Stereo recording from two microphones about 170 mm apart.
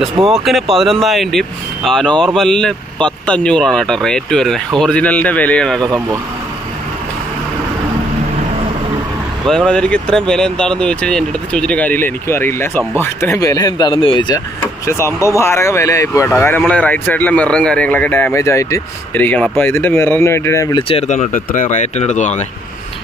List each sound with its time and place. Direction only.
0.3 s speech: centre (ahead or behind)
9.5 s speech: 5° left (ahead or behind); by 14.4 s 25° left (ahead or behind)
14.9 s speech: 15° left (ahead or behind)
21.1 s speech: 45° left (ahead or behind)